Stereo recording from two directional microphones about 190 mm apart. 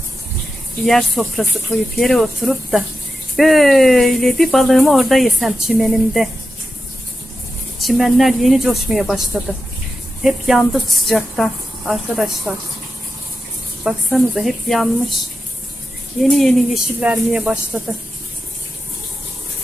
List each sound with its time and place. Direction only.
0.8 s speech: centre (ahead or behind)
7.8 s speech: centre (ahead or behind)
13.8 s speech: centre (ahead or behind)
16.2 s speech: centre (ahead or behind)